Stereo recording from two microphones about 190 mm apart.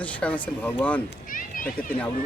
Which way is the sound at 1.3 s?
45° left (ahead or behind).